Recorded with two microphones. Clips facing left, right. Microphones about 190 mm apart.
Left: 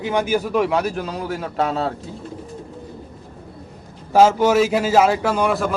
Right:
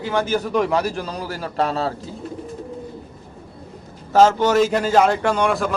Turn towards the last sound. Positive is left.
turn(degrees=0)  # may be behind; listen again after turning